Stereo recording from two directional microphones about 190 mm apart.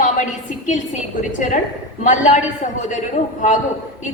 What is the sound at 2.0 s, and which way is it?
Speech, 40° left (ahead or behind).